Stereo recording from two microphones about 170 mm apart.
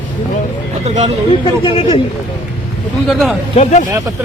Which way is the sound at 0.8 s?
40° right (ahead or behind).